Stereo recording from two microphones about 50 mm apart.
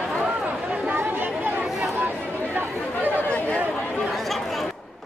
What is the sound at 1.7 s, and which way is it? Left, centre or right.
Chatter, centre.